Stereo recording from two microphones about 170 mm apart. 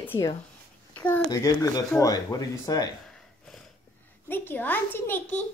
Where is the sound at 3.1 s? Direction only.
Centre (ahead or behind).